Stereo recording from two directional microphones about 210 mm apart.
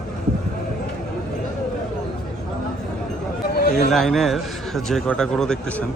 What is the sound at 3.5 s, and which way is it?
Chatter, 50° left (ahead or behind).